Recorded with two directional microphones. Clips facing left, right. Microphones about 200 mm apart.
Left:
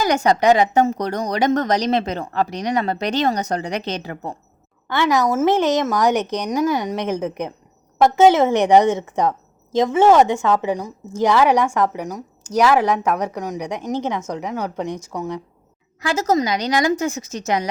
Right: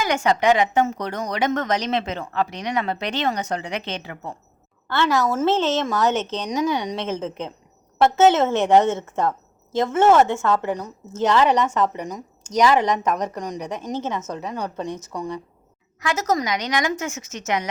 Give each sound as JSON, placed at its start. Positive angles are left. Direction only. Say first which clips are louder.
{"t": 0.0, "sound": "a woman's voice", "louder": "left 3 dB", "side_deg": 40}
{"t": 4.9, "sound": "a woman's voice", "louder": "left 3 dB", "side_deg": 15}
{"t": 16.0, "sound": "a woman's voice", "louder": "left 4 dB", "side_deg": 30}